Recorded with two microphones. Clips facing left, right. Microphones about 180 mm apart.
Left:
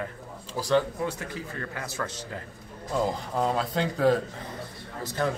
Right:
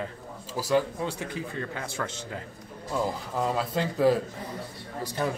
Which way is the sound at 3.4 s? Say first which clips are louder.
Left 1 dB; 5° right (ahead or behind).